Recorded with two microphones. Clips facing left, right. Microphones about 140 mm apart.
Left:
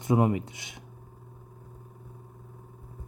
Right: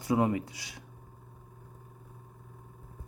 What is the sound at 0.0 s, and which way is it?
Speech, 20° left (ahead or behind).